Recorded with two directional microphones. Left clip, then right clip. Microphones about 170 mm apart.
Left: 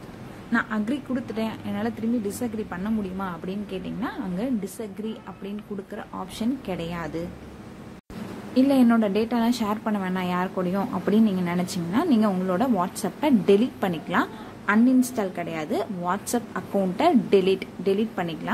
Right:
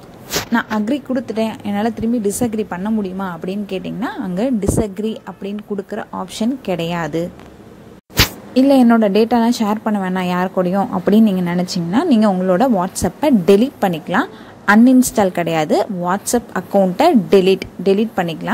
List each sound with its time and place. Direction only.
0.5 s a woman's voice: 35° right (ahead or behind)
8.5 s a woman's voice: 40° right (ahead or behind)
14.9 s a woman's voice: 45° right (ahead or behind)